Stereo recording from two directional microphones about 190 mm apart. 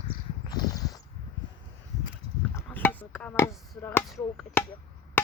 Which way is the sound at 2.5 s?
10° left (ahead or behind).